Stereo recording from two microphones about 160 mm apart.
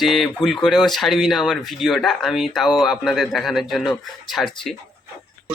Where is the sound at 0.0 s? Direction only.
Centre (ahead or behind).